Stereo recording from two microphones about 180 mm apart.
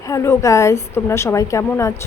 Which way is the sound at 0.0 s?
15° left (ahead or behind).